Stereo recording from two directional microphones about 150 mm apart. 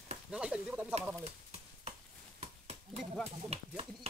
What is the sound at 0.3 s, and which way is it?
Speech, 5° right (ahead or behind).